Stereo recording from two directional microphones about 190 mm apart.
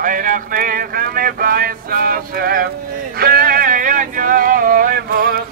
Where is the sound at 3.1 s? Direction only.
50° right (ahead or behind).